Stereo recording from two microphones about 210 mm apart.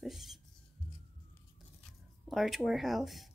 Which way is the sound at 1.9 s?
Centre (ahead or behind).